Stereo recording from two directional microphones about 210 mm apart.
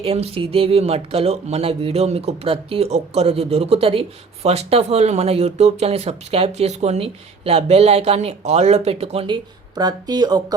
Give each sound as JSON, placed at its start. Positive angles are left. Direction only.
{"t": 0.0, "sound": "speech", "side_deg": -25}